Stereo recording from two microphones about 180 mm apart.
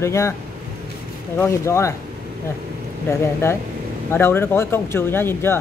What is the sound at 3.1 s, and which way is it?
Speech, 15° left (ahead or behind).